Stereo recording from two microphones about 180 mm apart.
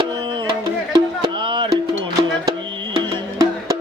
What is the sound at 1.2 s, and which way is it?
Music, 25° right (ahead or behind).